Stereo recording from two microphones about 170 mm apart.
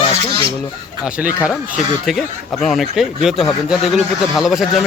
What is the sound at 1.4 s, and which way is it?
Speech, 5° right (ahead or behind).